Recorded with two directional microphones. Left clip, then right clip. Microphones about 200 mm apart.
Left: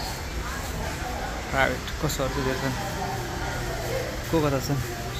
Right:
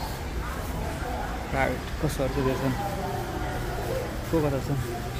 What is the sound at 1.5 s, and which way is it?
Speech, 5° right (ahead or behind).